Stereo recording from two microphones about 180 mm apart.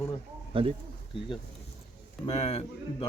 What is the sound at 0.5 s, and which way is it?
Speech, 30° right (ahead or behind).